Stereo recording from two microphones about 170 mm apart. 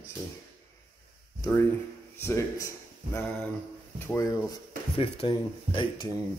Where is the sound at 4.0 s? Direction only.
15° left (ahead or behind).